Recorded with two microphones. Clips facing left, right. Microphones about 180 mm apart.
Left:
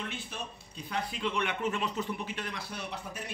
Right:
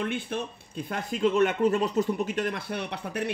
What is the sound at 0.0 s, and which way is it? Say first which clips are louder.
A man's voice: right 10 dB; 55° right (ahead or behind).